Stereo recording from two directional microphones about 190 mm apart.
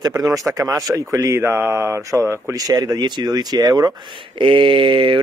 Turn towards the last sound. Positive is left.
turn(degrees=-25)  # may be behind; listen again after turning